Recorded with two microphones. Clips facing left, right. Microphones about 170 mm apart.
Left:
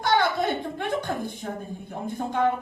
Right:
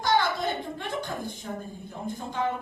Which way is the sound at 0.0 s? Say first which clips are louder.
Left 2 dB; 60° left (ahead or behind).